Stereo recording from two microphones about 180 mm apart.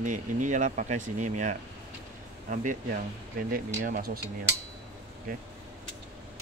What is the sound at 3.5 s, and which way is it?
Speech, 45° right (ahead or behind).